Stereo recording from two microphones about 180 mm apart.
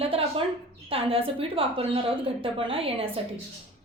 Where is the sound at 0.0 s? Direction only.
30° right (ahead or behind).